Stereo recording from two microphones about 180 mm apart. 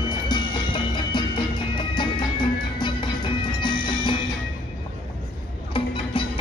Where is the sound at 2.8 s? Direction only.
25° left (ahead or behind).